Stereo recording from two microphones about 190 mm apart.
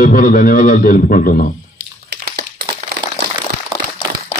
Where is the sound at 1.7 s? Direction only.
55° right (ahead or behind).